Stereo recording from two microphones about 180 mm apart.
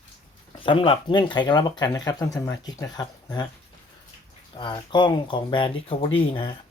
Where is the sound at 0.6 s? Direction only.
30° left (ahead or behind).